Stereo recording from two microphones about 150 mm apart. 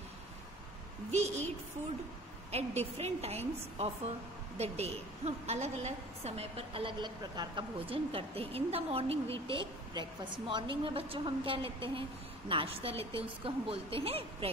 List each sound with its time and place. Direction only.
1.1 s a woman's voice: 50° right (ahead or behind)
2.5 s a woman's voice: 45° right (ahead or behind)